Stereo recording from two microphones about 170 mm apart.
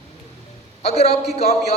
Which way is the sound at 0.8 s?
35° left (ahead or behind).